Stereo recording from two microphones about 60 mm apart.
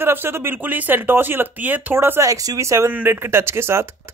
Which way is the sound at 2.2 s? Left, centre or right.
Right.